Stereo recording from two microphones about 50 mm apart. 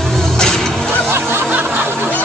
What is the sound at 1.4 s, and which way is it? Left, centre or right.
Music, right.